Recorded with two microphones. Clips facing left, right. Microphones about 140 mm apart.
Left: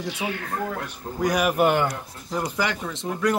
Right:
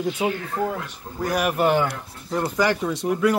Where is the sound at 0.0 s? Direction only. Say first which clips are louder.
Right 5 dB; 90° left.